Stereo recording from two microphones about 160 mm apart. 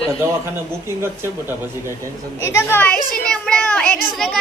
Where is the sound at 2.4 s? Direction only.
15° left (ahead or behind).